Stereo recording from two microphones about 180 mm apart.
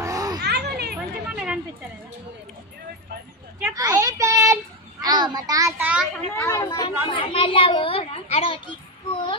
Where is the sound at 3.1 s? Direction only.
60° right (ahead or behind).